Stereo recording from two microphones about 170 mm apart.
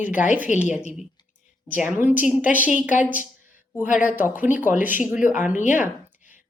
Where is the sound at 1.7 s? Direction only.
10° right (ahead or behind).